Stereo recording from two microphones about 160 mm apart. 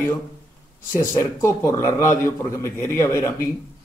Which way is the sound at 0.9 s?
15° left (ahead or behind).